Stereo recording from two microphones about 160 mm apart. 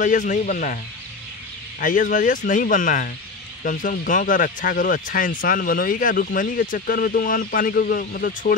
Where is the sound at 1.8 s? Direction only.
55° left (ahead or behind).